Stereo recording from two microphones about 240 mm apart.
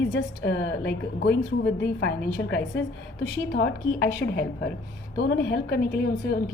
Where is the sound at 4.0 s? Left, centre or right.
Left.